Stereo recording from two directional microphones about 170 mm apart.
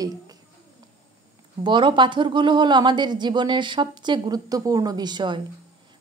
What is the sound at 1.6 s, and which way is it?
A woman's voice, 30° right (ahead or behind).